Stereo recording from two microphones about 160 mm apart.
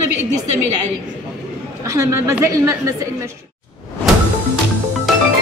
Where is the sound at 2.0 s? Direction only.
15° right (ahead or behind).